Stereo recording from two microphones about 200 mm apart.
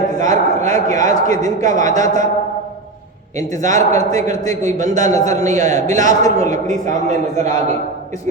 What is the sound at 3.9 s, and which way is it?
A man's voice, 15° left (ahead or behind).